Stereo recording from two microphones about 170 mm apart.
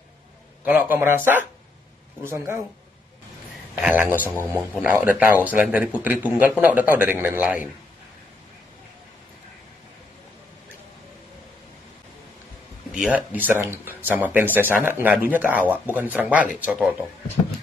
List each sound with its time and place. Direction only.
0.7 s speech: 10° right (ahead or behind)
3.8 s speech: 10° right (ahead or behind)
12.9 s speech: 5° right (ahead or behind)